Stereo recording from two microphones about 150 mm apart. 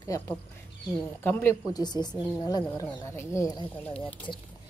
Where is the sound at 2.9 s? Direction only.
25° left (ahead or behind).